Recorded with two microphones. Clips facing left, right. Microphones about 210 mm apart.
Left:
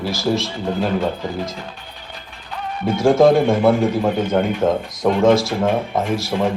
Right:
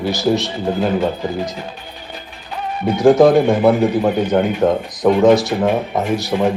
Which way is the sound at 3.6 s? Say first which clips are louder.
Right 2 dB; 15° right (ahead or behind).